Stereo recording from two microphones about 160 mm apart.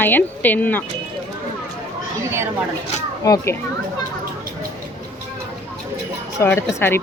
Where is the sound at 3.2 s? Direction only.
20° left (ahead or behind).